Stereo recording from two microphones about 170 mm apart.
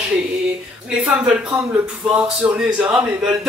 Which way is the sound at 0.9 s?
5° right (ahead or behind).